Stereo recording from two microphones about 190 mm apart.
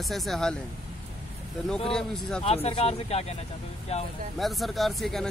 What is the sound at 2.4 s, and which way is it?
Speech, 30° left (ahead or behind).